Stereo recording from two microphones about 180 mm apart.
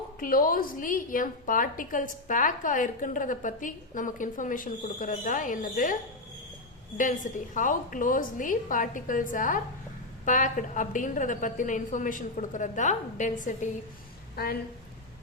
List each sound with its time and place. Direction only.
0.2 s a woman's voice: 50° left (ahead or behind)
14.3 s speech: 60° left (ahead or behind)